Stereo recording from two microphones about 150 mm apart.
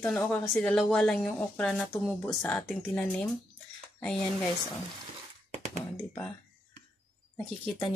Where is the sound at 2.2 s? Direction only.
15° left (ahead or behind).